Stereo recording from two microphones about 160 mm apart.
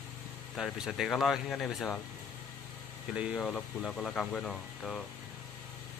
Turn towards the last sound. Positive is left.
turn(degrees=0)  # may be behind; listen again after turning